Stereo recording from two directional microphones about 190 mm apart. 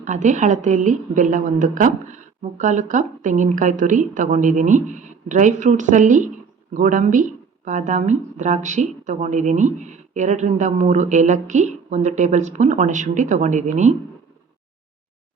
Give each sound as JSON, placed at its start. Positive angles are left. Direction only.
{"t": 0.0, "sound": "speech", "side_deg": -40}